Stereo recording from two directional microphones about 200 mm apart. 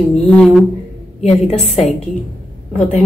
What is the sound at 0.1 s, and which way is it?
Speech, 5° left (ahead or behind).